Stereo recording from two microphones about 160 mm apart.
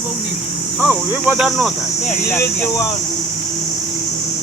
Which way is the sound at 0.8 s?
10° right (ahead or behind).